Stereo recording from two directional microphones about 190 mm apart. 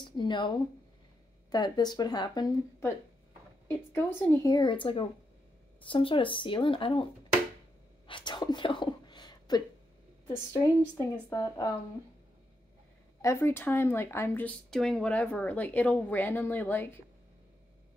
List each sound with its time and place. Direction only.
0.0 s speech: 25° left (ahead or behind)
8.1 s a sound: 25° left (ahead or behind)
10.3 s speech: 10° left (ahead or behind)
13.2 s speech: 15° left (ahead or behind)